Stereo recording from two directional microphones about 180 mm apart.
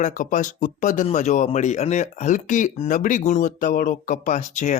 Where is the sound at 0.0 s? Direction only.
45° left (ahead or behind).